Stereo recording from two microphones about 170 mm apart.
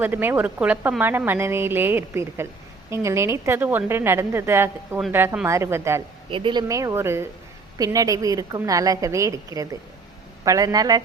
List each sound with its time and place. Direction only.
0.0 s a woman's voice: 10° right (ahead or behind)
6.3 s a woman's voice: 30° right (ahead or behind)